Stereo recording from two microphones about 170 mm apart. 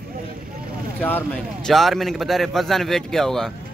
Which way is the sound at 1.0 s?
10° left (ahead or behind).